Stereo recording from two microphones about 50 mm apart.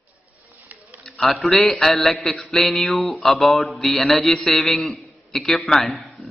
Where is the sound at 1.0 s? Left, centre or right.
Centre.